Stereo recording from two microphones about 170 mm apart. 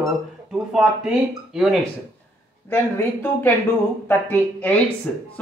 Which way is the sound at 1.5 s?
Centre (ahead or behind).